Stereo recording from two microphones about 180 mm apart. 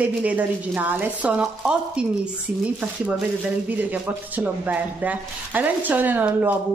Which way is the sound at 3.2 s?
10° right (ahead or behind).